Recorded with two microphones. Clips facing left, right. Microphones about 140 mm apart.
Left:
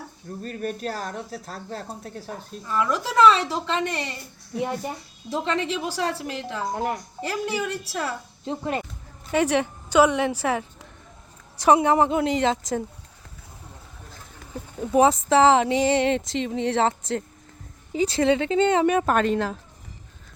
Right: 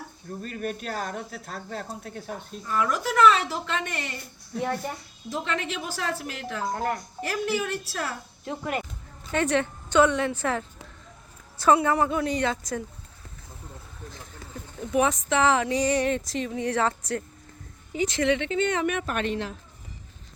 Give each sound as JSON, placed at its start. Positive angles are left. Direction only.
{"t": 0.4, "sound": "speech", "side_deg": 40}
{"t": 4.5, "sound": "a woman's voice", "side_deg": 20}
{"t": 5.3, "sound": "speech", "side_deg": 30}
{"t": 6.7, "sound": "speech", "side_deg": 15}
{"t": 9.3, "sound": "a woman's voice", "side_deg": 10}
{"t": 11.6, "sound": "speech", "side_deg": 20}
{"t": 14.8, "sound": "speech", "side_deg": 35}